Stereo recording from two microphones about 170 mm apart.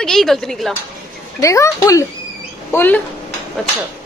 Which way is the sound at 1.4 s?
20° left (ahead or behind).